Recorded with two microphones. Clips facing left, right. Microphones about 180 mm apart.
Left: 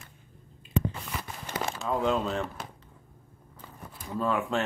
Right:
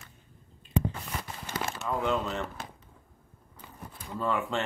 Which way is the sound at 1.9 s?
15° left (ahead or behind).